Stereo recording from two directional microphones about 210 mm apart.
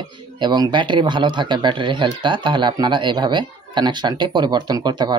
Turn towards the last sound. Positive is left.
turn(degrees=-20)  # may be behind; listen again after turning